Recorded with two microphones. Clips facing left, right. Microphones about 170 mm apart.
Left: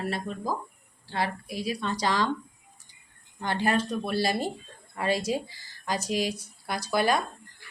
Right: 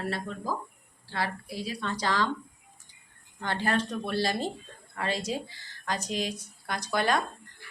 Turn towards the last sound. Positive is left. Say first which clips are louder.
# left 2 dB
turn(degrees=10)  # may be behind; listen again after turning